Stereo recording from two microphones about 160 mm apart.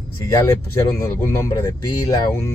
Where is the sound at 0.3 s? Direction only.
20° left (ahead or behind).